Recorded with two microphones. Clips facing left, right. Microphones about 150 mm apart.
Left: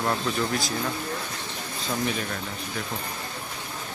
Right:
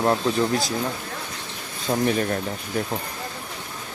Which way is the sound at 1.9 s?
45° right (ahead or behind).